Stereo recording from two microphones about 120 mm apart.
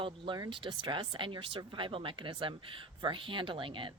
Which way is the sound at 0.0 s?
35° right (ahead or behind).